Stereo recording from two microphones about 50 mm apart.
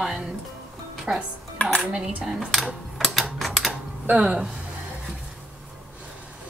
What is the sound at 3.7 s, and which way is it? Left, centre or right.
Computer keyboard, right.